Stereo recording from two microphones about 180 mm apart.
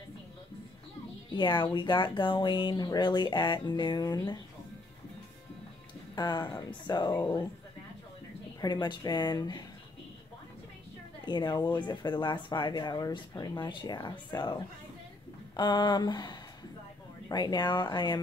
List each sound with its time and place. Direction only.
1.3 s speech: 25° left (ahead or behind)
6.1 s speech: 20° left (ahead or behind)
8.5 s speech: 20° left (ahead or behind)
11.1 s speech: 25° left (ahead or behind)